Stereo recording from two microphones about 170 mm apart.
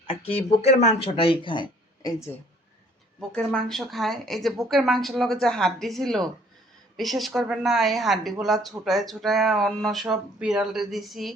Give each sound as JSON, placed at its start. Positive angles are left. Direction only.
{"t": 0.1, "sound": "speech", "side_deg": 35}
{"t": 3.2, "sound": "speech", "side_deg": 5}